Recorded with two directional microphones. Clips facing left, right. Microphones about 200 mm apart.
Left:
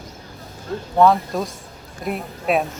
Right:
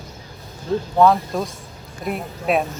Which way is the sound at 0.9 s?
Centre (ahead or behind).